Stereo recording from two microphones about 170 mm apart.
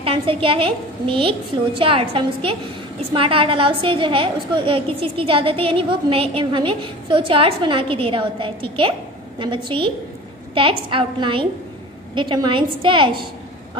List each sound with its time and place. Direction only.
0.0 s a woman's voice: 30° right (ahead or behind)